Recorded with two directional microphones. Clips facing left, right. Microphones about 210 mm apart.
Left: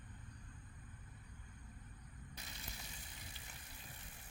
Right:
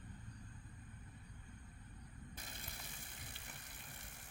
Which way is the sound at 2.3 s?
50° right (ahead or behind).